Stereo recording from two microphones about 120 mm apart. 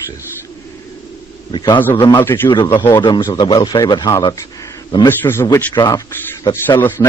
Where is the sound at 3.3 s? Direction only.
40° left (ahead or behind).